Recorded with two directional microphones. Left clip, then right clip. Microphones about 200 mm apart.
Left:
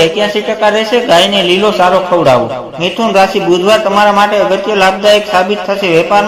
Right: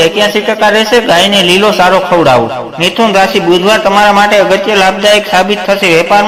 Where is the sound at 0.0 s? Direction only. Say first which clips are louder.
Right 2 dB; 15° right (ahead or behind).